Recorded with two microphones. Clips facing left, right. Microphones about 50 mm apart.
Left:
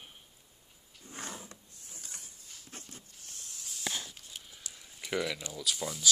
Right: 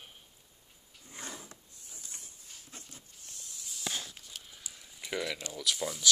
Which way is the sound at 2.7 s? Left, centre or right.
Left.